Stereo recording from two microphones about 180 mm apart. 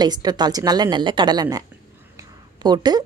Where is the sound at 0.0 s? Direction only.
20° right (ahead or behind).